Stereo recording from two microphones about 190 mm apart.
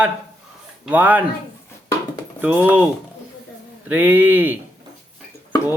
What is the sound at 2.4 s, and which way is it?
Speech, 10° right (ahead or behind).